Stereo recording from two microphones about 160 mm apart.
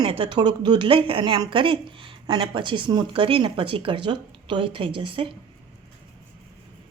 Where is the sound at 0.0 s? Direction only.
35° right (ahead or behind).